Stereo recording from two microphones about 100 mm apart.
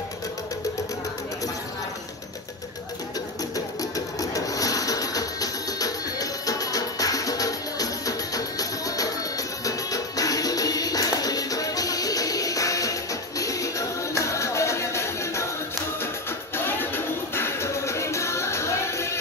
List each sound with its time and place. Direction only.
4.2 s music: 35° left (ahead or behind)
16.5 s music: 20° left (ahead or behind)